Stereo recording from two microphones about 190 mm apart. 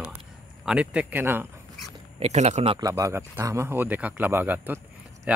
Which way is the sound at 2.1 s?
35° right (ahead or behind).